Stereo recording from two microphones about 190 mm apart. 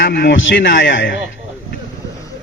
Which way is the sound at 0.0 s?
60° left (ahead or behind).